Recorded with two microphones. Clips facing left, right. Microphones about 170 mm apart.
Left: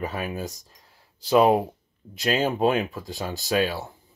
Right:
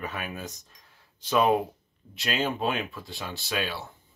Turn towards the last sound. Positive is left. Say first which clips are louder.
# left 7 dB
turn(degrees=40)  # may be behind; listen again after turning